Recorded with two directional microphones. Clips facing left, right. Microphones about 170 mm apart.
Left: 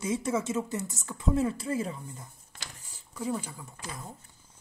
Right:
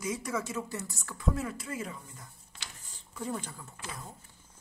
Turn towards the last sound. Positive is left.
turn(degrees=10)  # may be behind; listen again after turning